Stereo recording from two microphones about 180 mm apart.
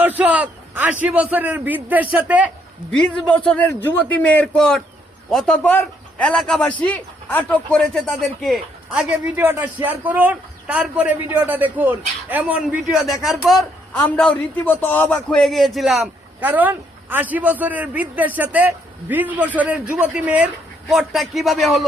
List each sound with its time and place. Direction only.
0.0 s a man's voice: 10° right (ahead or behind)
2.9 s a man's voice: 5° left (ahead or behind)